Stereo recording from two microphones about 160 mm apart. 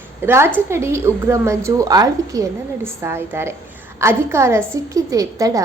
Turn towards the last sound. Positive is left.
turn(degrees=-20)  # may be behind; listen again after turning